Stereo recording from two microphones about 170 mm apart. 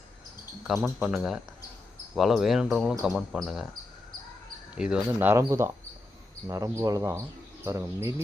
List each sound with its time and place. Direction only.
0.7 s cricket: 5° right (ahead or behind)
4.8 s speech: 10° right (ahead or behind)